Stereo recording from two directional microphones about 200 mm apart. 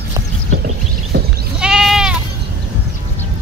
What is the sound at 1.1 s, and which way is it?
Goat, 55° right (ahead or behind).